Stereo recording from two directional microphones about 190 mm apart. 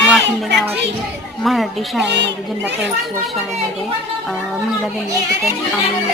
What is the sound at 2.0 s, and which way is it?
Speech, 65° right (ahead or behind).